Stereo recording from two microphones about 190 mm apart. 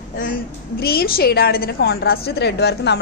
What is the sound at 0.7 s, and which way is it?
A woman's voice, 55° left (ahead or behind).